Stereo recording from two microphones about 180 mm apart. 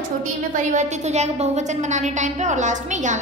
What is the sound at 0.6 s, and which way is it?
A woman's voice, 40° right (ahead or behind).